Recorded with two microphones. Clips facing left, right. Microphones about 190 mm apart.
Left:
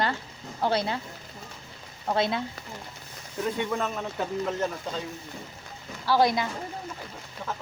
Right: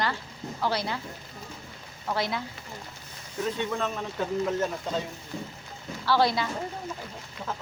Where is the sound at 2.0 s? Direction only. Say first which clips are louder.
Left 3 dB; 25° left (ahead or behind).